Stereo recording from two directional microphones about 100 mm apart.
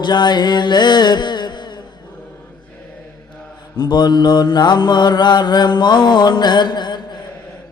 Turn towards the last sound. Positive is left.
turn(degrees=45)  # may be behind; listen again after turning